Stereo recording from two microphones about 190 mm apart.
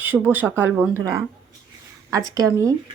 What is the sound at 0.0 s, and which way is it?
Speech, 10° right (ahead or behind).